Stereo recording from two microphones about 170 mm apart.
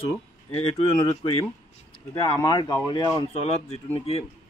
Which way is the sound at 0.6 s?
35° left (ahead or behind).